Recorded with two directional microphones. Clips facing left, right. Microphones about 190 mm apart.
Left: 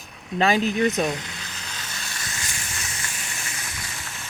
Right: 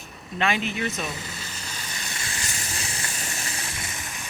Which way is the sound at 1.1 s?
5° right (ahead or behind).